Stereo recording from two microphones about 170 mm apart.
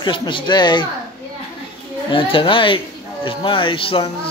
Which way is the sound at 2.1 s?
30° left (ahead or behind).